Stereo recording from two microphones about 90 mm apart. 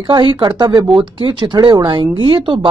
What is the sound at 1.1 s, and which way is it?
Speech, 65° right (ahead or behind).